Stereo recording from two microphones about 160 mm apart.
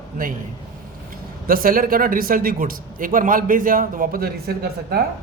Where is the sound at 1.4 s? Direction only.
60° right (ahead or behind).